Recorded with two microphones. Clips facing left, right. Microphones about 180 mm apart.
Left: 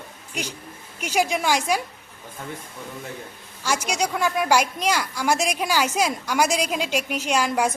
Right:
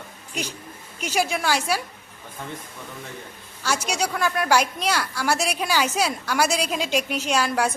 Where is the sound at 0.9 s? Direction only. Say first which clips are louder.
Left 2 dB; 10° left (ahead or behind).